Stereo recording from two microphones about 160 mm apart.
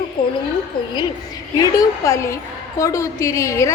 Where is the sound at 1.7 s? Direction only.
20° left (ahead or behind).